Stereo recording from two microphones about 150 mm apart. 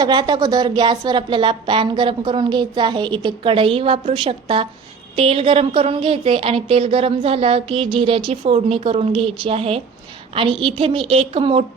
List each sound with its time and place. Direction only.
0.0 s speech: 30° right (ahead or behind)